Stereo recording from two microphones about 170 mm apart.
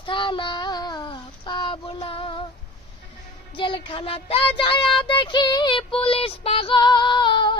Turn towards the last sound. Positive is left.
turn(degrees=25)  # may be behind; listen again after turning